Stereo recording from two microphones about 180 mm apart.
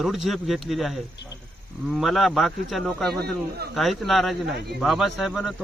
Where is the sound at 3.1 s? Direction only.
60° right (ahead or behind).